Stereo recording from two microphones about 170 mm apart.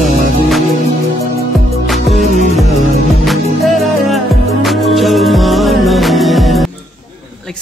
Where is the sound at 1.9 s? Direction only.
Centre (ahead or behind).